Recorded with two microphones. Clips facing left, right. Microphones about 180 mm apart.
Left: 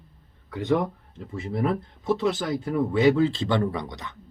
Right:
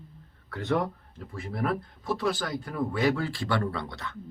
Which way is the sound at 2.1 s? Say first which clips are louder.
Left 5 dB; 20° left (ahead or behind).